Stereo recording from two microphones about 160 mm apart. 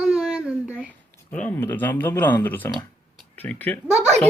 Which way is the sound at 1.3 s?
10° left (ahead or behind).